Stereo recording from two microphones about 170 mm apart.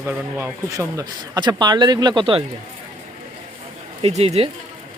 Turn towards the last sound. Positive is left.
turn(degrees=-35)  # may be behind; listen again after turning